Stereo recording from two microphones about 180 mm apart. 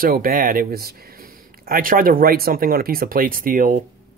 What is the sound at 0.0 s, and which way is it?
Speech, 55° right (ahead or behind).